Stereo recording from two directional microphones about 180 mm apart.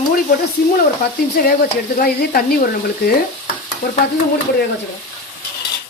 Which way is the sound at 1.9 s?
60° left (ahead or behind).